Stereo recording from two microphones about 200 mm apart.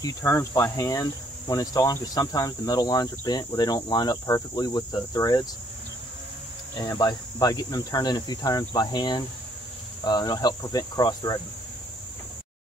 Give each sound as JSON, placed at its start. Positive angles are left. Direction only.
{"t": 0.0, "sound": "speech", "side_deg": 15}
{"t": 6.7, "sound": "speech", "side_deg": 20}